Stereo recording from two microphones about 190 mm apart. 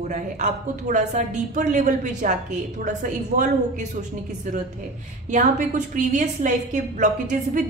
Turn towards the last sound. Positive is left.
turn(degrees=-40)  # may be behind; listen again after turning